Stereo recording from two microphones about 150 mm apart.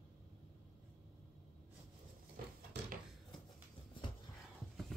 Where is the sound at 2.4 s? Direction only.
75° right (ahead or behind).